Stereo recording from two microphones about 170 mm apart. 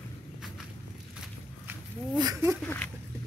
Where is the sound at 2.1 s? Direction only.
20° right (ahead or behind).